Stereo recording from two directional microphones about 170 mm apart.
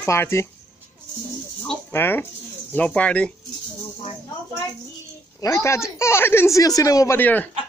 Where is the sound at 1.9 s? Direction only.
10° left (ahead or behind).